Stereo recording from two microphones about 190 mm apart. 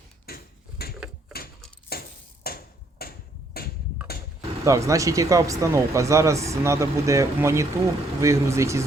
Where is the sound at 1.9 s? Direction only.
55° left (ahead or behind).